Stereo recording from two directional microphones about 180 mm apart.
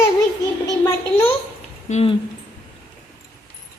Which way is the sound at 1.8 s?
40° left (ahead or behind).